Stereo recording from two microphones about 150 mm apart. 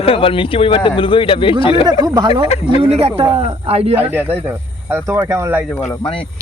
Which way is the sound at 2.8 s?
40° right (ahead or behind).